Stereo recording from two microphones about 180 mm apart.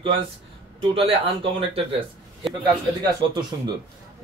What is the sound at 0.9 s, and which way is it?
Speech, 30° right (ahead or behind).